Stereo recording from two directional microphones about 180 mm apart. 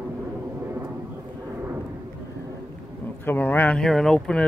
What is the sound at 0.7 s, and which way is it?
Vehicle, 10° right (ahead or behind).